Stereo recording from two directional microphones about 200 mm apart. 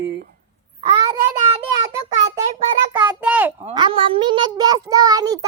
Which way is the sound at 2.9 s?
20° right (ahead or behind).